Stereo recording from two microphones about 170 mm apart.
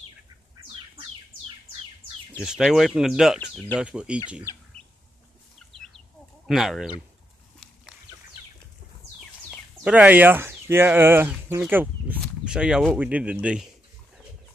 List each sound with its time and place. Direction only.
2.4 s speech: 5° right (ahead or behind)
3.3 s speech: 10° left (ahead or behind)
3.7 s speech: 5° right (ahead or behind)
4.5 s chicken: 15° left (ahead or behind)
6.4 s speech: centre (ahead or behind)
9.2 s speech: centre (ahead or behind)